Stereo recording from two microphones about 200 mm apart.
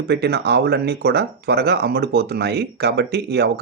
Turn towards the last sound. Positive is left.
turn(degrees=-55)  # may be behind; listen again after turning